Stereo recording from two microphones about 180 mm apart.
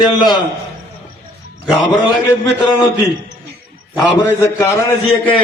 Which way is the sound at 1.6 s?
Centre (ahead or behind).